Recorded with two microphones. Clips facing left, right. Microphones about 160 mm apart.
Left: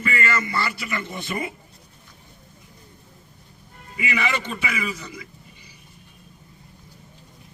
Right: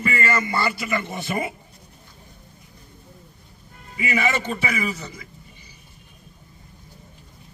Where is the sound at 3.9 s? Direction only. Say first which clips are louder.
Right 3 dB; 45° right (ahead or behind).